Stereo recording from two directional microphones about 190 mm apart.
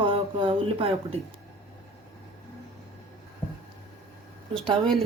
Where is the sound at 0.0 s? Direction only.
25° right (ahead or behind).